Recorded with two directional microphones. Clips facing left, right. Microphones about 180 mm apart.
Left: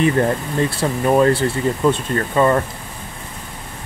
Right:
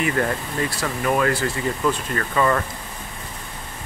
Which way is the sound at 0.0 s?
25° left (ahead or behind).